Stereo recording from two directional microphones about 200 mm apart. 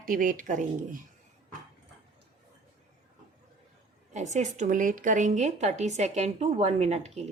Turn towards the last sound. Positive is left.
turn(degrees=-35)  # may be behind; listen again after turning